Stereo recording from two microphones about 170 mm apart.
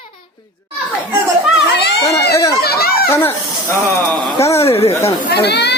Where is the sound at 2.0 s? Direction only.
20° left (ahead or behind).